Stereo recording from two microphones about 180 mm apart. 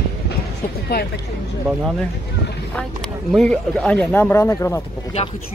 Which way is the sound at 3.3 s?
5° left (ahead or behind).